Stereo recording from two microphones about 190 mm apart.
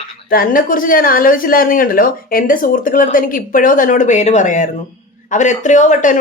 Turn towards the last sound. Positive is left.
turn(degrees=40)  # may be behind; listen again after turning